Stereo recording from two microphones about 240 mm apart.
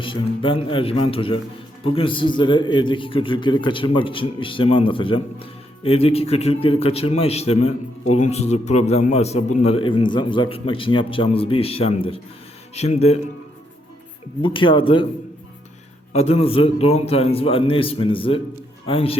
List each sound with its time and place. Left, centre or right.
0.0 s a man's voice: left
14.4 s a man's voice: left
16.1 s a man's voice: left